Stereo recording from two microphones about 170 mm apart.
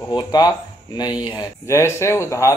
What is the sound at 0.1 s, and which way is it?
A man's voice, 25° left (ahead or behind).